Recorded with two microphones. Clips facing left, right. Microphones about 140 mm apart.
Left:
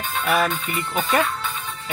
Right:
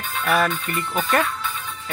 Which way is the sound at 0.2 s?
5° left (ahead or behind).